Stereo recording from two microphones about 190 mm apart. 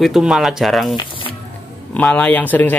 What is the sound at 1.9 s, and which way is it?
Speech, 5° left (ahead or behind).